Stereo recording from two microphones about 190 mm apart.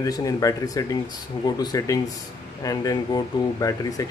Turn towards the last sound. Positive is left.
turn(degrees=20)  # may be behind; listen again after turning